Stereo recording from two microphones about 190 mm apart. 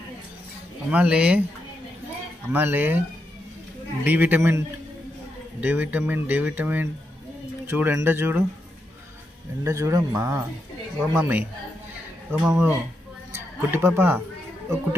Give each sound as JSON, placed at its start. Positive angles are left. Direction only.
{"t": 0.8, "sound": "speech", "side_deg": -5}
{"t": 2.5, "sound": "speech", "side_deg": -10}
{"t": 4.0, "sound": "speech", "side_deg": -10}
{"t": 9.6, "sound": "speech", "side_deg": -15}